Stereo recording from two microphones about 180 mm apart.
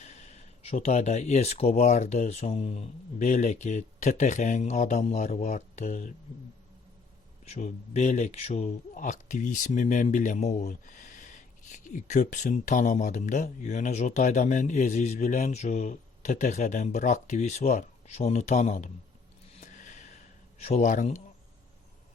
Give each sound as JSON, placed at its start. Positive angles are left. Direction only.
{"t": 0.0, "sound": "speech", "side_deg": 40}
{"t": 7.4, "sound": "speech", "side_deg": 40}
{"t": 19.5, "sound": "a sound", "side_deg": 45}
{"t": 20.7, "sound": "speech", "side_deg": 40}